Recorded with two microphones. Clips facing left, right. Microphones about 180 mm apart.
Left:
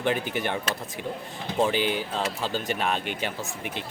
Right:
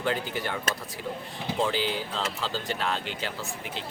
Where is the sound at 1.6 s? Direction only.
15° left (ahead or behind).